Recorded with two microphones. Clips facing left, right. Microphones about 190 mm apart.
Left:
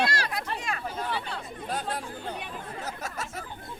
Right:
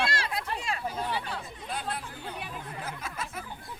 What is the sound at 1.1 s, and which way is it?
Chatter, 10° right (ahead or behind).